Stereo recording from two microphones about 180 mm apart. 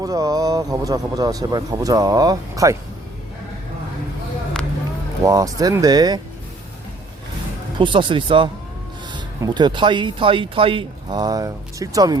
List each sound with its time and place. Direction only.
0.0 s speech: 20° right (ahead or behind)
5.2 s speech: 20° right (ahead or behind)
7.8 s speech: 25° right (ahead or behind)